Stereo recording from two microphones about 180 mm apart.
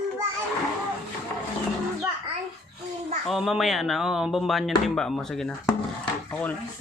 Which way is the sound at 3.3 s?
Centre (ahead or behind).